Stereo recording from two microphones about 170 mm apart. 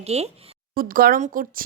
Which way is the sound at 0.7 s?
60° right (ahead or behind).